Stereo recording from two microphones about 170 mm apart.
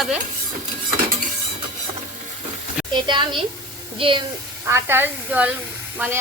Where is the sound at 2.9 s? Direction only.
25° right (ahead or behind).